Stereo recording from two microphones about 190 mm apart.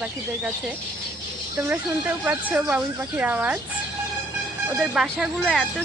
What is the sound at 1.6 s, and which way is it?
Speech, 10° right (ahead or behind).